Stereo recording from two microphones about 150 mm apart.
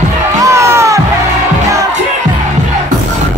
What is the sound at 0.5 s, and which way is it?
Music, 20° right (ahead or behind).